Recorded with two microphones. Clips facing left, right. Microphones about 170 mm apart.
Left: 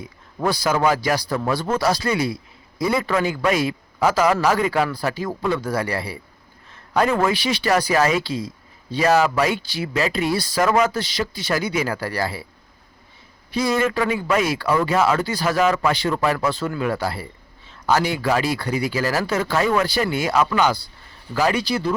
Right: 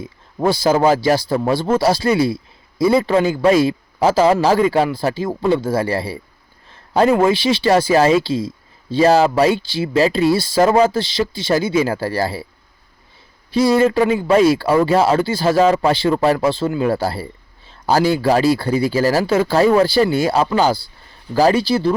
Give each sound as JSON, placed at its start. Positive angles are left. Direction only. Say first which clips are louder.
{"t": 0.0, "sound": "a man's voice", "louder": "right 5 dB", "side_deg": -25}
{"t": 13.5, "sound": "a man's voice", "louder": "right 7 dB", "side_deg": -30}